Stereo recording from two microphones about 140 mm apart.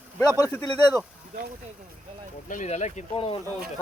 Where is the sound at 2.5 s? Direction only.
60° left (ahead or behind).